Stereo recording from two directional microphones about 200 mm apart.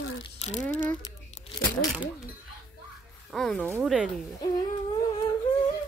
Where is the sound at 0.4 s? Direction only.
35° left (ahead or behind).